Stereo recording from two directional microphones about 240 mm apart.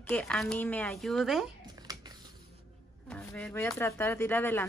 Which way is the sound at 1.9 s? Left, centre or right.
Centre.